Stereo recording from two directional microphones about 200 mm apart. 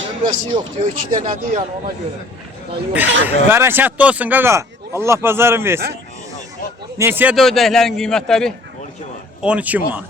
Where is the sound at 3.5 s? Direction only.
10° right (ahead or behind).